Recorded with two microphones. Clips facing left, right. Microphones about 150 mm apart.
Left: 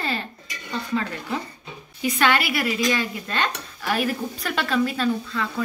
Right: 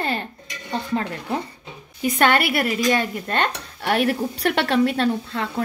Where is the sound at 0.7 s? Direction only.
50° right (ahead or behind).